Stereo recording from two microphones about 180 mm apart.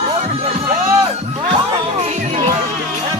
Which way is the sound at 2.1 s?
35° right (ahead or behind).